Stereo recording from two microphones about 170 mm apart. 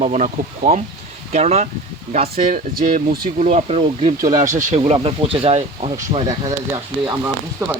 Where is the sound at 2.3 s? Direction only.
55° right (ahead or behind); by 5.6 s 35° right (ahead or behind).